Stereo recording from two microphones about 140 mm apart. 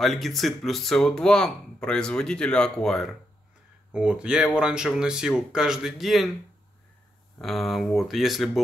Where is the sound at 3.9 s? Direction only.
5° right (ahead or behind).